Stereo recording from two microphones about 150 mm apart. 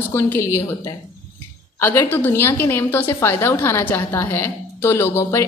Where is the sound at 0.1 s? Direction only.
15° left (ahead or behind).